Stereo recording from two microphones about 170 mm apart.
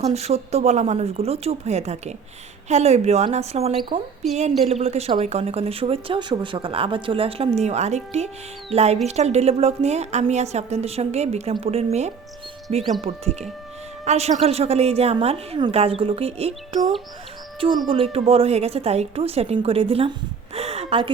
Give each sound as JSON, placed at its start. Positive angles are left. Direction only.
{"t": 0.0, "sound": "speech", "side_deg": -40}
{"t": 17.8, "sound": "speech", "side_deg": -30}